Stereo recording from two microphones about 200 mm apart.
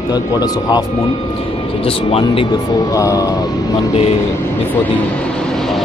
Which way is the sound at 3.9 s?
30° left (ahead or behind).